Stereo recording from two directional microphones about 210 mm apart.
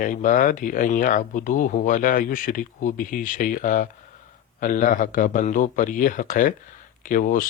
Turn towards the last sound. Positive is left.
turn(degrees=40)  # may be behind; listen again after turning